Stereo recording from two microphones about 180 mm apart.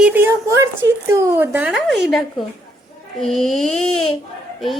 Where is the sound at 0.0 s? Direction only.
10° right (ahead or behind).